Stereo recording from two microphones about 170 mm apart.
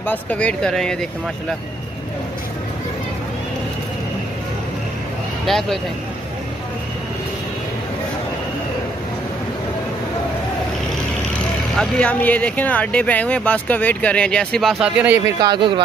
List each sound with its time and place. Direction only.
0.0 s speech: 10° left (ahead or behind)
5.5 s speech: 5° left (ahead or behind)
11.7 s speech: 5° left (ahead or behind)
15.4 s speech: 30° right (ahead or behind)